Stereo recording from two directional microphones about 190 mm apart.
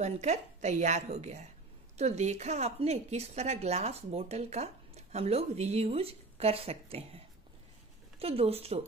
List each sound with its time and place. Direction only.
0.0 s a woman's voice: 35° right (ahead or behind)
8.2 s a woman's voice: 30° right (ahead or behind)